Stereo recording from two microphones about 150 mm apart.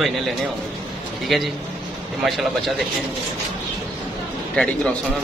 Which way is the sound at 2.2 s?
Centre (ahead or behind).